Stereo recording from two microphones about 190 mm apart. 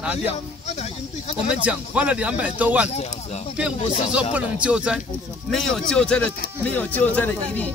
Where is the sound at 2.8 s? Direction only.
35° left (ahead or behind).